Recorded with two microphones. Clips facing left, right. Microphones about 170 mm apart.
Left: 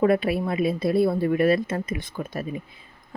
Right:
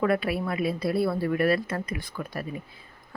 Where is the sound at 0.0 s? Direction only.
25° left (ahead or behind).